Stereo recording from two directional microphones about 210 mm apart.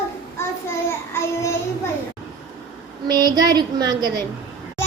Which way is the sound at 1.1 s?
10° left (ahead or behind).